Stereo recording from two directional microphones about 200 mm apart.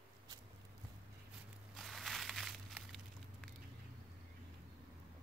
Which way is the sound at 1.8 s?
Centre (ahead or behind).